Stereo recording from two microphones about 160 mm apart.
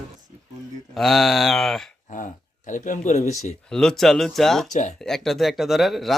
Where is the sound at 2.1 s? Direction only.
50° left (ahead or behind).